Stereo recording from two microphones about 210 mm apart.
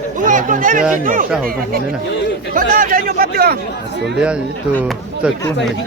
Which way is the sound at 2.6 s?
40° right (ahead or behind).